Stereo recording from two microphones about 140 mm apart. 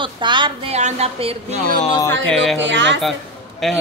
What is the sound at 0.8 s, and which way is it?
Speech, 50° right (ahead or behind).